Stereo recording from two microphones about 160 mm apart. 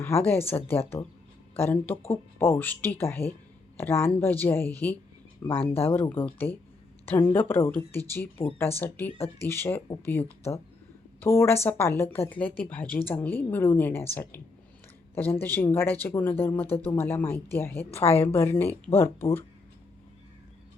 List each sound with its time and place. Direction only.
0.0 s speech: 15° left (ahead or behind)
5.5 s a woman's voice: 35° left (ahead or behind)
5.9 s speech: 10° left (ahead or behind)
8.7 s a woman's voice: 40° left (ahead or behind)
9.4 s speech: 15° left (ahead or behind)
17.9 s a woman's voice: 40° left (ahead or behind)
18.3 s speech: 10° left (ahead or behind)